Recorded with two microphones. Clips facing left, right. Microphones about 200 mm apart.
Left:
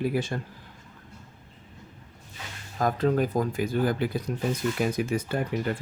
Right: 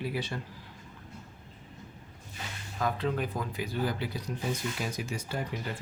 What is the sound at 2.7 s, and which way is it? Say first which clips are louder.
Speech: left 7 dB; 45° left (ahead or behind).